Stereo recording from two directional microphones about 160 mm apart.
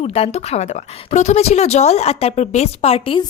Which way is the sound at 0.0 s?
40° left (ahead or behind).